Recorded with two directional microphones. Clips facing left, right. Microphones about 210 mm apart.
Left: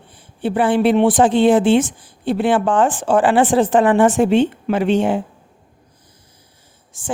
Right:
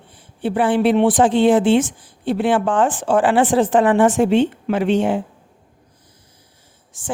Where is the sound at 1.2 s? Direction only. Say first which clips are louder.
Left 1 dB; 35° left (ahead or behind).